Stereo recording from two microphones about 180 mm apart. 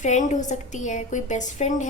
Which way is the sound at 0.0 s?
40° left (ahead or behind).